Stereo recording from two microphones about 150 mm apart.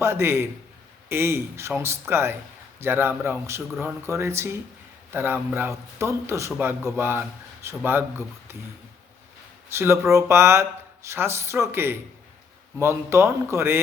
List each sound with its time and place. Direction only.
0.0 s speech: 15° right (ahead or behind)
9.6 s speech: 15° right (ahead or behind)